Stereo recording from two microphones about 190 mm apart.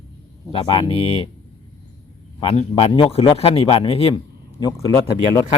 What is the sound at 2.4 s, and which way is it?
A man's voice, 30° left (ahead or behind).